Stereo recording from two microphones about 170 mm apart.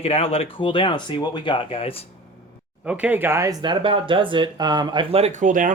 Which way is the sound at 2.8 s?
10° right (ahead or behind).